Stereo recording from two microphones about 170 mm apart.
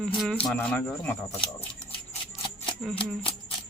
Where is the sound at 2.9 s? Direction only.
30° left (ahead or behind).